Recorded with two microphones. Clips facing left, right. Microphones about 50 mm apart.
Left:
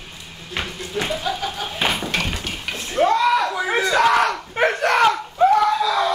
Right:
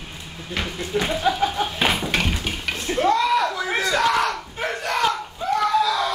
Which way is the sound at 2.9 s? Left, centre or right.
Centre.